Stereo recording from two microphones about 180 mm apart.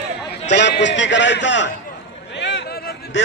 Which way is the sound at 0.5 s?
75° left (ahead or behind).